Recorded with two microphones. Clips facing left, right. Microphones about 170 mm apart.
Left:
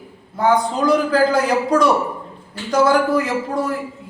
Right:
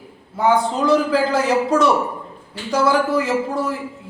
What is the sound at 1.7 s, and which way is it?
A man's voice, 5° right (ahead or behind).